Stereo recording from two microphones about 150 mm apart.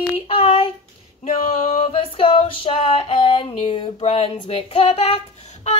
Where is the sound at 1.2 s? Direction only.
45° left (ahead or behind).